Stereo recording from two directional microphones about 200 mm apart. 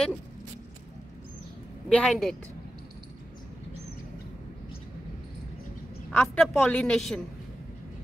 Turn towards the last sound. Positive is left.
turn(degrees=0)  # may be behind; listen again after turning